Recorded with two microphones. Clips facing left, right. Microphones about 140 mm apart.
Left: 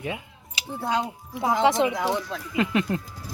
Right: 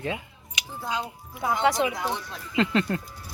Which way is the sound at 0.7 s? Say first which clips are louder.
Left 5 dB; 65° left (ahead or behind).